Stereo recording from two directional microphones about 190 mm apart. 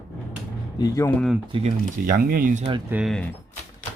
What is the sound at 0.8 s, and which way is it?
Speech, 15° left (ahead or behind).